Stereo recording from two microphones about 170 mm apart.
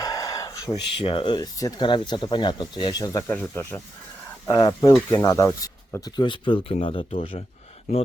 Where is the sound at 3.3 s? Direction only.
10° left (ahead or behind).